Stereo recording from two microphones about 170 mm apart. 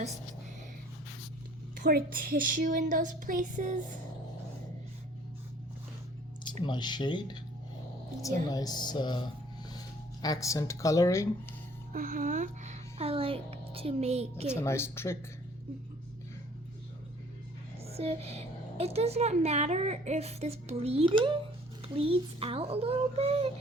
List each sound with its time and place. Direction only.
1.8 s a woman's voice: 60° right (ahead or behind)
6.4 s speech: 25° left (ahead or behind)
8.4 s speech: 20° left (ahead or behind)
11.9 s speech: 55° right (ahead or behind); by 14.4 s 40° right (ahead or behind)
14.5 s speech: 15° left (ahead or behind)
17.8 s a sound: 35° right (ahead or behind)
18.8 s a woman's voice: 35° right (ahead or behind)